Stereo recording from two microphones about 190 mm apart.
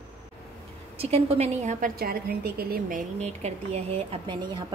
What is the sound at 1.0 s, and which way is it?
A woman's voice, 35° right (ahead or behind).